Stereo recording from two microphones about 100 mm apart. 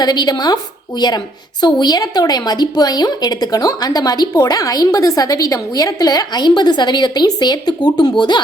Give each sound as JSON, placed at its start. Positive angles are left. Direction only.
{"t": 0.0, "sound": "a woman's voice", "side_deg": 45}